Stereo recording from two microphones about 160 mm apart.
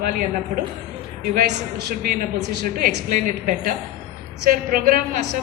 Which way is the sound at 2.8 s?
60° right (ahead or behind).